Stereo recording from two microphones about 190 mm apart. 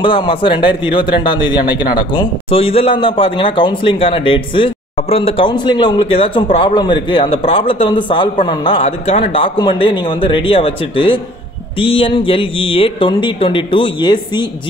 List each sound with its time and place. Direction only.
0.0 s a man's voice: 25° left (ahead or behind)